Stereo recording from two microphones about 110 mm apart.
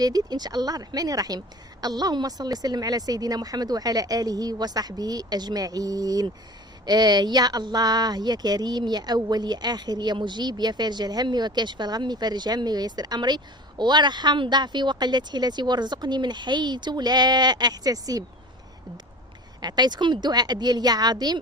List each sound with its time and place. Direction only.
0.0 s speech: 35° right (ahead or behind)
19.6 s speech: 40° right (ahead or behind)